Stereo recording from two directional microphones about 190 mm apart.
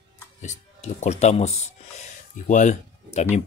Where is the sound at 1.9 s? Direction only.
40° left (ahead or behind).